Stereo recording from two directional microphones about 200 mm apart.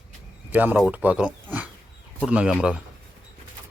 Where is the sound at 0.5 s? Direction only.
10° right (ahead or behind).